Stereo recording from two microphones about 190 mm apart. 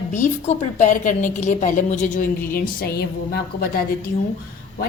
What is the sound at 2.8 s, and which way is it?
A woman's voice, 55° left (ahead or behind).